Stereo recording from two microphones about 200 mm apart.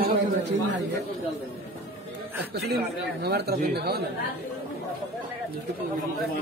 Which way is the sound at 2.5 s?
55° right (ahead or behind).